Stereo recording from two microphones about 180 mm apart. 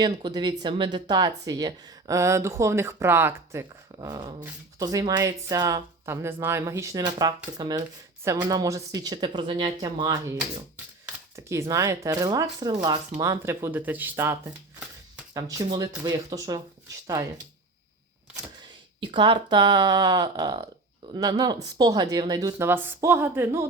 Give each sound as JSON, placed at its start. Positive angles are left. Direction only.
{"t": 0.0, "sound": "speech", "side_deg": -25}
{"t": 18.9, "sound": "speech", "side_deg": -25}